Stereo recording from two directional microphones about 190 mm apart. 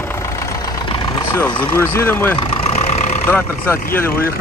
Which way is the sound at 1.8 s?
15° left (ahead or behind).